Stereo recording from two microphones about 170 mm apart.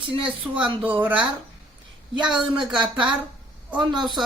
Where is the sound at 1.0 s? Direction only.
10° right (ahead or behind).